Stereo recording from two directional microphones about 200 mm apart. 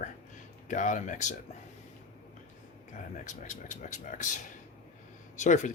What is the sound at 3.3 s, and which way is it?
Speech, 40° left (ahead or behind).